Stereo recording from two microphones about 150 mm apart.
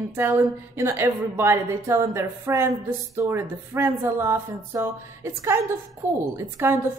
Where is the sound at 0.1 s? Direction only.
15° right (ahead or behind).